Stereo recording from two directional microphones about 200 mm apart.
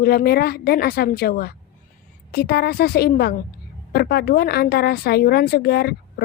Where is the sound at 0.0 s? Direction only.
50° left (ahead or behind).